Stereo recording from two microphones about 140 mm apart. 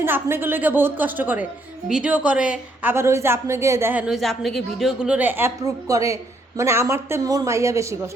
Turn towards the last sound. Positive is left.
turn(degrees=-20)  # may be behind; listen again after turning